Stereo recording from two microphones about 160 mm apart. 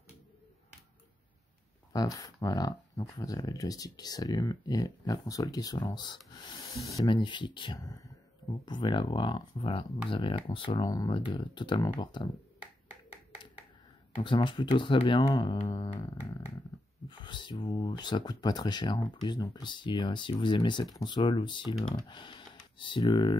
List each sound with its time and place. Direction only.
1.9 s speech: 25° left (ahead or behind)
14.1 s speech: 30° left (ahead or behind)
17.1 s speech: 30° left (ahead or behind)